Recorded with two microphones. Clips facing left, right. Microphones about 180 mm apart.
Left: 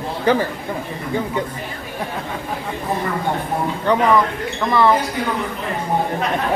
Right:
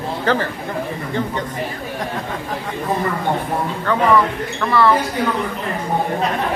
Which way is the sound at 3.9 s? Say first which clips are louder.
Even; 15° left (ahead or behind).